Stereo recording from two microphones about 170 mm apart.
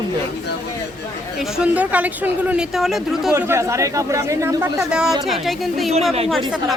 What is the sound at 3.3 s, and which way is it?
Speech, 15° right (ahead or behind).